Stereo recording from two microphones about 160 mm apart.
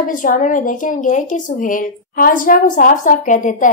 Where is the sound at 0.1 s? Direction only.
55° left (ahead or behind).